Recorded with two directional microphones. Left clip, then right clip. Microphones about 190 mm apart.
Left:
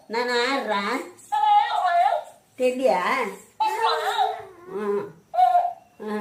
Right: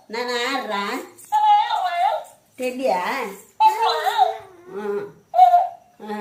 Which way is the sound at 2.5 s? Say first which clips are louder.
Left 1 dB; 15° left (ahead or behind).